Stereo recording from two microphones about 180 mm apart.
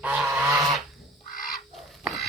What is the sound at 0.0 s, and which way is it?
Goose, 10° right (ahead or behind).